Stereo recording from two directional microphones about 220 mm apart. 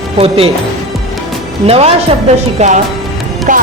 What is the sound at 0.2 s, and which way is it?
Speech, 25° right (ahead or behind).